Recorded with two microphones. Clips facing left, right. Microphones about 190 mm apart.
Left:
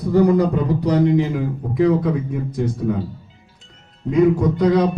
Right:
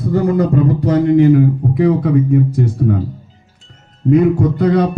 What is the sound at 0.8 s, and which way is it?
A man's voice, 55° right (ahead or behind).